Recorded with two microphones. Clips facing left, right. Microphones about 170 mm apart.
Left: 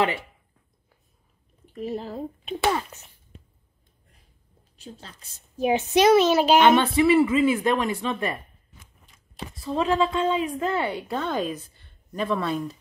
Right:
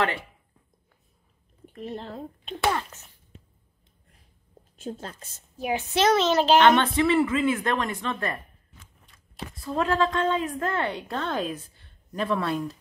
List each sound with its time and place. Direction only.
1.8 s a woman's voice: 5° left (ahead or behind)
4.7 s a woman's voice: 50° right (ahead or behind)
5.6 s a woman's voice: 20° left (ahead or behind)
6.0 s speech: 10° left (ahead or behind)
9.4 s a woman's voice: centre (ahead or behind)